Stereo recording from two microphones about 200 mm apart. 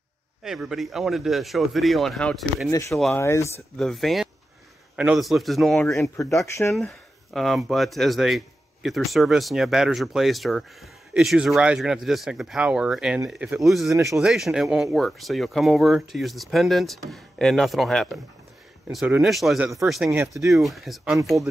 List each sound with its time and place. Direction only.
0.4 s speech: centre (ahead or behind)
2.7 s speech: 15° left (ahead or behind)
3.7 s speech: centre (ahead or behind)
6.3 s speech: 15° left (ahead or behind)
6.7 s speech: centre (ahead or behind)
13.9 s speech: 15° right (ahead or behind)
14.2 s speech: centre (ahead or behind)
20.5 s speech: centre (ahead or behind)